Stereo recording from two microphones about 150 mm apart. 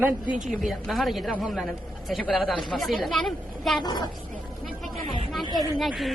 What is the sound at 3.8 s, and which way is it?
Speech, 30° left (ahead or behind).